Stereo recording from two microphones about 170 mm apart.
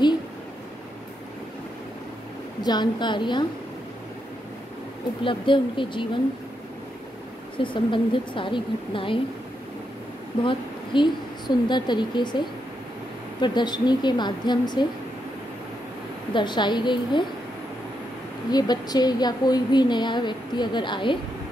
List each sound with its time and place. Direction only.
2.6 s a woman's voice: 25° left (ahead or behind)
5.2 s a woman's voice: 30° left (ahead or behind)
7.5 s a woman's voice: 30° left (ahead or behind)
10.4 s a woman's voice: 30° left (ahead or behind)
16.3 s a woman's voice: 25° left (ahead or behind)
18.5 s a woman's voice: 25° left (ahead or behind)